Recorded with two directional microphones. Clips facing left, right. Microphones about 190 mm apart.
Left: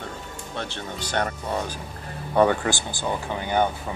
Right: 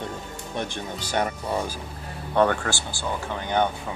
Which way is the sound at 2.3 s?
10° left (ahead or behind).